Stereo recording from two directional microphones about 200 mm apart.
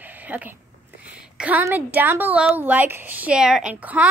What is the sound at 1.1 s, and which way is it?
A woman's voice, 5° right (ahead or behind).